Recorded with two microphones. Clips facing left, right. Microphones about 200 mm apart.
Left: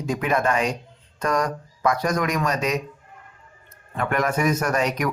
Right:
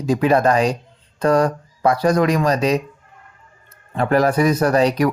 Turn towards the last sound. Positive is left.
turn(degrees=-35)  # may be behind; listen again after turning